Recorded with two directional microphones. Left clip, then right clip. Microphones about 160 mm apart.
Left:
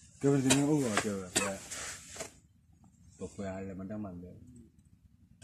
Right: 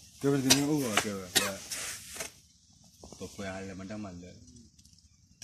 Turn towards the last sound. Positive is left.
turn(degrees=20)  # may be behind; listen again after turning